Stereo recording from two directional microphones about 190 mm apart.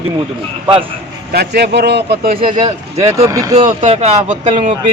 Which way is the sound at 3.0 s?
15° right (ahead or behind).